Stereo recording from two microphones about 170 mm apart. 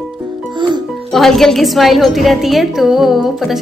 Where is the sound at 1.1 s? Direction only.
Centre (ahead or behind).